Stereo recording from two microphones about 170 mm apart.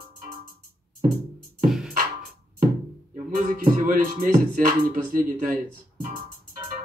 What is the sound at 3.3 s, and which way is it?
Music, 55° right (ahead or behind).